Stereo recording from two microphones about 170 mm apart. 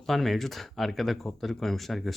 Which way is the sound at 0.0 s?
Centre (ahead or behind).